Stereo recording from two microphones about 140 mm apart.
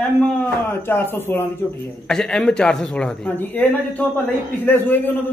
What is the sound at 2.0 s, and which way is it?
A man's voice, 5° left (ahead or behind).